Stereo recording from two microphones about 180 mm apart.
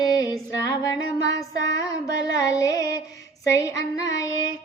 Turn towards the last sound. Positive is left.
turn(degrees=20)  # may be behind; listen again after turning